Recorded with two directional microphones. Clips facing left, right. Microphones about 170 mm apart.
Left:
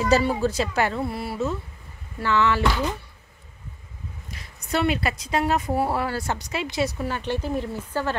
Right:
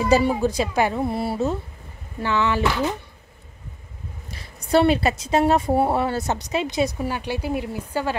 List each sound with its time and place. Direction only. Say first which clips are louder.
0.0 s speech: right 2 dB; 15° right (ahead or behind); by 1.6 s 30° right (ahead or behind)
2.1 s speech: even; 15° right (ahead or behind)
4.3 s speech: right 8 dB; 30° right (ahead or behind); by 8.2 s 10° right (ahead or behind)